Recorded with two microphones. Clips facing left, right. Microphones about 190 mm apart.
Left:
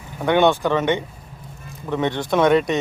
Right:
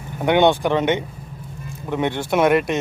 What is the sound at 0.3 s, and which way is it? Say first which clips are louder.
Speech: right 1 dB; 15° right (ahead or behind).